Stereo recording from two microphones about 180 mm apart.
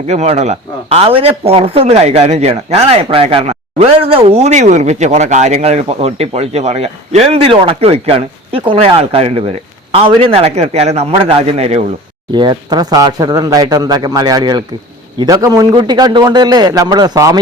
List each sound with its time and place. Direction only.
0.1 s speech: 35° right (ahead or behind)
12.3 s speech: 25° right (ahead or behind)